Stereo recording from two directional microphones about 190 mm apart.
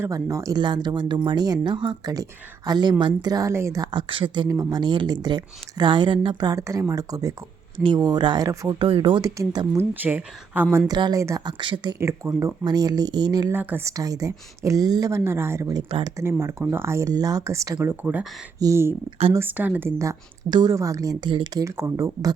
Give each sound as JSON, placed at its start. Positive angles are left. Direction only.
{"t": 0.0, "sound": "speech", "side_deg": -15}
{"t": 13.5, "sound": "a woman's voice", "side_deg": -10}
{"t": 15.9, "sound": "speech", "side_deg": -25}
{"t": 16.1, "sound": "a woman's voice", "side_deg": -15}